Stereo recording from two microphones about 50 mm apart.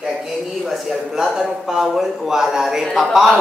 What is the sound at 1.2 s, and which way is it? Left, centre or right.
A man's voice, centre.